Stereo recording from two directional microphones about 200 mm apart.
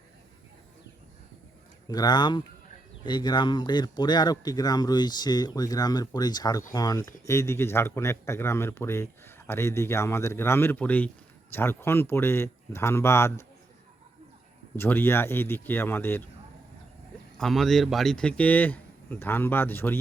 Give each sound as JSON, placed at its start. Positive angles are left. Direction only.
{"t": 1.9, "sound": "speech", "side_deg": 20}
{"t": 14.8, "sound": "speech", "side_deg": 10}
{"t": 17.3, "sound": "speech", "side_deg": 0}